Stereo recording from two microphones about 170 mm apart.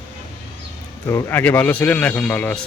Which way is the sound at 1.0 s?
10° left (ahead or behind).